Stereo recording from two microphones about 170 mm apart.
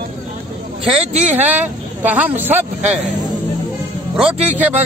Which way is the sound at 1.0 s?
40° right (ahead or behind).